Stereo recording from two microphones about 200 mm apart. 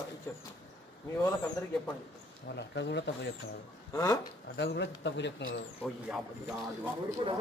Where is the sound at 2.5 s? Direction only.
60° left (ahead or behind).